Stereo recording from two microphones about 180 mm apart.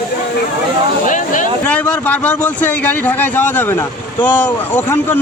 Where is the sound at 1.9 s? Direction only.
10° left (ahead or behind).